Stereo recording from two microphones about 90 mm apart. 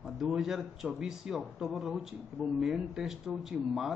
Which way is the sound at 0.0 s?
Centre (ahead or behind).